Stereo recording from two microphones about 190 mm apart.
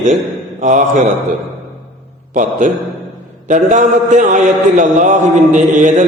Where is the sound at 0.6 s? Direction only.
40° right (ahead or behind).